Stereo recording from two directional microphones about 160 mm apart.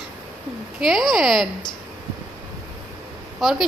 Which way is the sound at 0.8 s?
Centre (ahead or behind).